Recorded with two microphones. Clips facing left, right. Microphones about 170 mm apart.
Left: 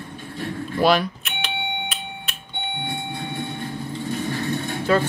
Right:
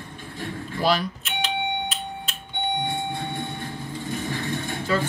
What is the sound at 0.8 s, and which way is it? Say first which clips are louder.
Doorbell: left 4 dB; 65° left (ahead or behind).